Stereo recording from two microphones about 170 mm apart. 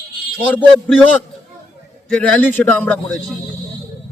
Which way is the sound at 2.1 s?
5° left (ahead or behind).